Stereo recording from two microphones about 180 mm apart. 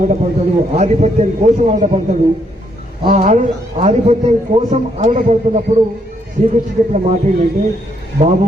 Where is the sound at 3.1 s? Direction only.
40° right (ahead or behind).